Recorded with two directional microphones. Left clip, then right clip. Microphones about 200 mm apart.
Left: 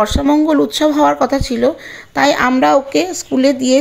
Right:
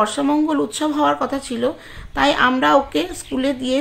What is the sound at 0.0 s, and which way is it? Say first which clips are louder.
Speech: left 5 dB; 30° left (ahead or behind).